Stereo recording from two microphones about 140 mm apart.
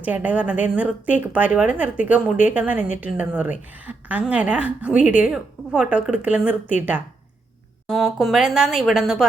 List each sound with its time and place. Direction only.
0.0 s a woman's voice: 10° right (ahead or behind)
7.9 s a woman's voice: centre (ahead or behind)